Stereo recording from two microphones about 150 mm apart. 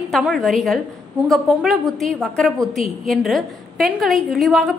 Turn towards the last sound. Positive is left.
turn(degrees=0)  # may be behind; listen again after turning